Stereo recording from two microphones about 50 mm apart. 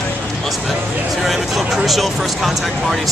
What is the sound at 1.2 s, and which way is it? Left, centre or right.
Speech, centre.